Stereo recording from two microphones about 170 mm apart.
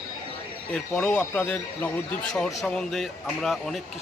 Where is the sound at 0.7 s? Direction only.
5° left (ahead or behind).